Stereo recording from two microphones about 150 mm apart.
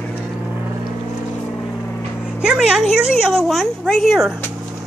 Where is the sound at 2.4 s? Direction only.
5° right (ahead or behind).